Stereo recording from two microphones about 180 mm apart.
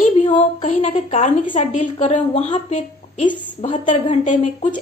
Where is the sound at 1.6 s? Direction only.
40° left (ahead or behind).